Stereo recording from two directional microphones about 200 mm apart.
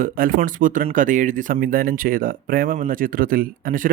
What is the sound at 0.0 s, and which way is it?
Speech, 45° right (ahead or behind).